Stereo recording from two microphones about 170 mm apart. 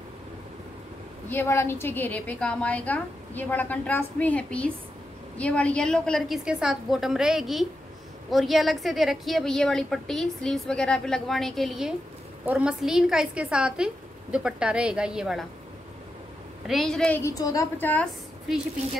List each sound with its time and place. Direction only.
1.3 s a woman's voice: 15° left (ahead or behind); by 15.4 s 5° right (ahead or behind)
16.6 s a woman's voice: centre (ahead or behind)
17.2 s a woman's voice: 20° left (ahead or behind)